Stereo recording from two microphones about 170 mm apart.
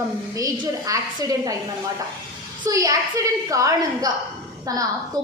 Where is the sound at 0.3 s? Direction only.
25° right (ahead or behind).